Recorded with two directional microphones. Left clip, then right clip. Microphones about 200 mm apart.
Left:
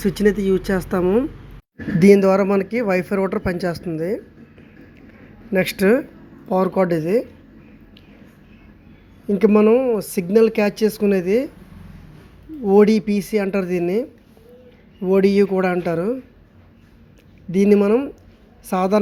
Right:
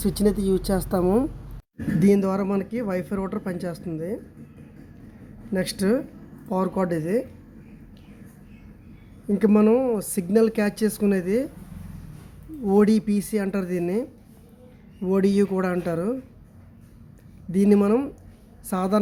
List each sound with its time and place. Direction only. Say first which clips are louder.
0.3 s speech: left 5 dB; 35° left (ahead or behind)
0.9 s speech: left 4 dB; 5° left (ahead or behind)
2.0 s speech: left 9 dB; 20° left (ahead or behind)
5.5 s speech: left 7 dB; 15° left (ahead or behind)
9.2 s speech: left 5 dB; 10° left (ahead or behind)
12.6 s speech: left 6 dB; 10° left (ahead or behind)
17.5 s speech: left 5 dB; 10° left (ahead or behind)